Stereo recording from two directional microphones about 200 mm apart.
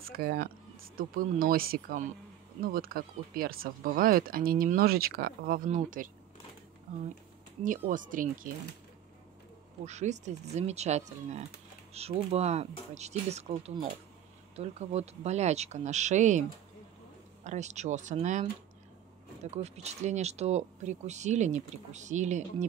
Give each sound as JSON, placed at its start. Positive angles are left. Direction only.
{"t": 0.0, "sound": "speech", "side_deg": -50}
{"t": 7.8, "sound": "speech", "side_deg": -40}
{"t": 9.8, "sound": "speech", "side_deg": -35}
{"t": 19.5, "sound": "speech", "side_deg": -35}